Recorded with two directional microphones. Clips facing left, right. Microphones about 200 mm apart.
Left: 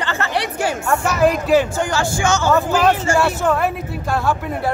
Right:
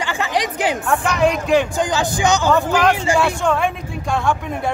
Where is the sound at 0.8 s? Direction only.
Centre (ahead or behind).